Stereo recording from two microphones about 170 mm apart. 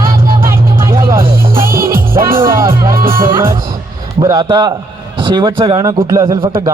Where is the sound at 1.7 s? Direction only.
55° right (ahead or behind).